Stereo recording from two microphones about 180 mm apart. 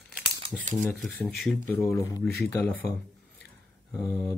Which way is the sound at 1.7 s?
15° left (ahead or behind).